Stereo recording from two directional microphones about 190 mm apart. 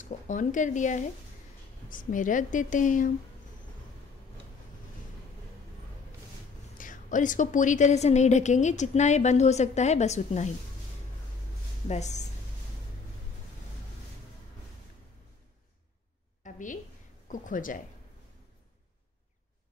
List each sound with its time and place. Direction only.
0.0 s a woman's voice: 40° left (ahead or behind)
6.8 s a woman's voice: 45° left (ahead or behind)
11.9 s a woman's voice: 40° left (ahead or behind)
16.4 s a sound: 40° left (ahead or behind)
17.3 s a woman's voice: 45° left (ahead or behind)